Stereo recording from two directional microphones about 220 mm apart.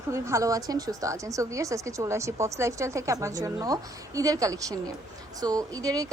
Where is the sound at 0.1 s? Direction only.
15° right (ahead or behind).